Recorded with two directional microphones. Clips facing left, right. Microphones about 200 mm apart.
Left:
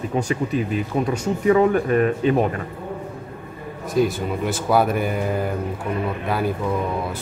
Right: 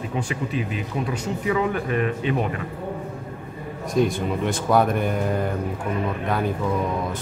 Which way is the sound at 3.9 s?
5° left (ahead or behind).